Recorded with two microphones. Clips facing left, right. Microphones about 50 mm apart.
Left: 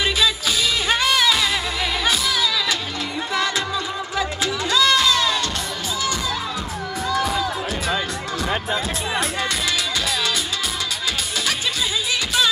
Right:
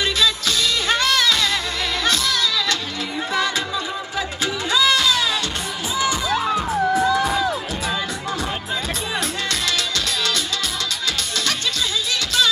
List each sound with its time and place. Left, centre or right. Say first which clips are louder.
0.0 s music: even; centre
3.3 s music: even; centre
5.9 s music: right 5 dB; right
7.1 s music: right 3 dB; centre
9.1 s music: left 2 dB; centre